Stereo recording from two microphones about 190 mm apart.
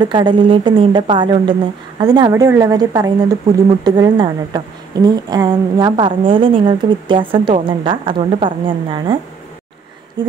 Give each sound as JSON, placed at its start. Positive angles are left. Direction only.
{"t": 0.0, "sound": "a woman's voice", "side_deg": -25}